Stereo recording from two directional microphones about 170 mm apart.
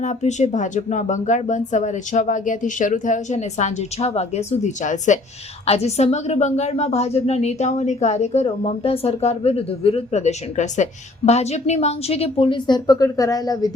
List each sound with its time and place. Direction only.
0.0 s a woman's voice: 45° left (ahead or behind); by 13.7 s 25° left (ahead or behind)